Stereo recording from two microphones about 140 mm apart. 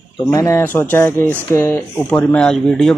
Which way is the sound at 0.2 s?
25° left (ahead or behind).